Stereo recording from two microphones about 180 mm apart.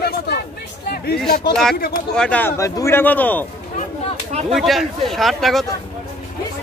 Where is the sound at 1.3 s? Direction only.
60° left (ahead or behind).